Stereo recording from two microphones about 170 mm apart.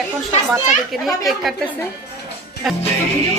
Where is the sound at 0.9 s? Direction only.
Centre (ahead or behind).